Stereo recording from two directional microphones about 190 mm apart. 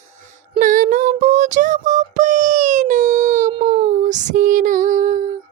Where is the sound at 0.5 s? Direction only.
45° right (ahead or behind).